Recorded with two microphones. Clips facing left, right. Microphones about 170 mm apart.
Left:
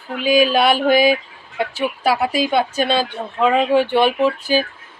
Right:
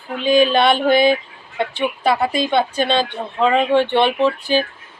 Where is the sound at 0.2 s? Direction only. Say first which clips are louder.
Right 1 dB; 5° left (ahead or behind).